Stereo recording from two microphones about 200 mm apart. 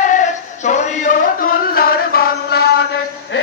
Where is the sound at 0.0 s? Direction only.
40° left (ahead or behind).